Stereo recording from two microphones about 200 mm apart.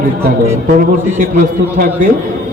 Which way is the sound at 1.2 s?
40° right (ahead or behind).